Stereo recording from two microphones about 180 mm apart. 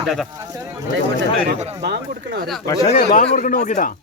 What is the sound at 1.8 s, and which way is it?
Speech, 60° right (ahead or behind).